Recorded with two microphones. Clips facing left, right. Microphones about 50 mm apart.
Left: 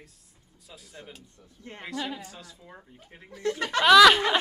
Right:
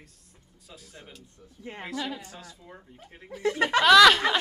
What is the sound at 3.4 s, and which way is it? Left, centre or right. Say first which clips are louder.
Speech: right 4 dB; centre.